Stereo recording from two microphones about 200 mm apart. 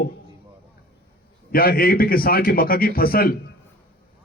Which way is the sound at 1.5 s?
50° left (ahead or behind).